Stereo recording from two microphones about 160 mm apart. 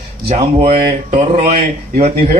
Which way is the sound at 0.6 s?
70° right (ahead or behind).